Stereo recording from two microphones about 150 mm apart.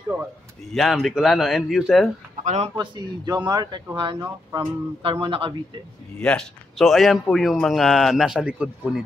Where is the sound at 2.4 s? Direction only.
50° right (ahead or behind).